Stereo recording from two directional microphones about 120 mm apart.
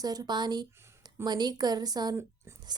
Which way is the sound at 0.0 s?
30° right (ahead or behind).